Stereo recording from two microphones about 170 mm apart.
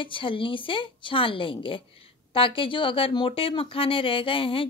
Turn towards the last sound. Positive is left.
turn(degrees=30)  # may be behind; listen again after turning